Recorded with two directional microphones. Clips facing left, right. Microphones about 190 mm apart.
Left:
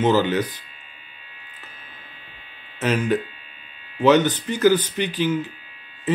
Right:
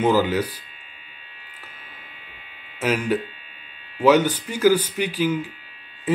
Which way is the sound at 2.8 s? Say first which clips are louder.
Left 1 dB; 10° right (ahead or behind).